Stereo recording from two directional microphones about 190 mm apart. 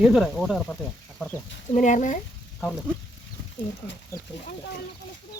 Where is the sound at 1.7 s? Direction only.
40° left (ahead or behind).